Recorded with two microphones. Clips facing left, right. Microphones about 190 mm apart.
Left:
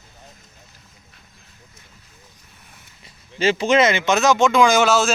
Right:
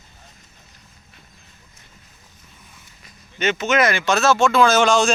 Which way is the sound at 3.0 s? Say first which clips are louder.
Left 3 dB; 30° left (ahead or behind).